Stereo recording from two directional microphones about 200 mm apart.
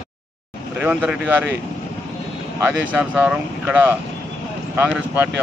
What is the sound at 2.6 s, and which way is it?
Speech, 10° right (ahead or behind).